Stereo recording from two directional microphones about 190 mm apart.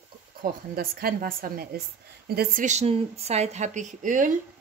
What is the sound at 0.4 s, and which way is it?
A woman's voice, 50° right (ahead or behind).